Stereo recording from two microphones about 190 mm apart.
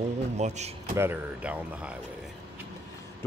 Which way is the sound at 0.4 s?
35° right (ahead or behind).